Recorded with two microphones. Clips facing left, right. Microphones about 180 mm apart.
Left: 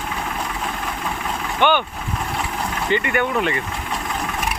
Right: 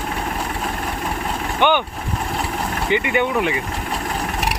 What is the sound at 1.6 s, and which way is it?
Speech, 15° right (ahead or behind).